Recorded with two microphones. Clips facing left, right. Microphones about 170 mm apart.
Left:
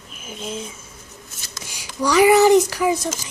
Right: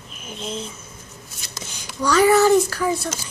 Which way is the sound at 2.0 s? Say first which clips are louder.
Left 2 dB; 15° left (ahead or behind).